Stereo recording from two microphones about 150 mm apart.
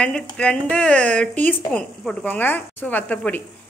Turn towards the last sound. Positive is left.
turn(degrees=10)  # may be behind; listen again after turning